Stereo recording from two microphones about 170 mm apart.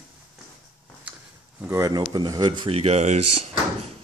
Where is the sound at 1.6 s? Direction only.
20° right (ahead or behind); by 3.5 s 40° right (ahead or behind).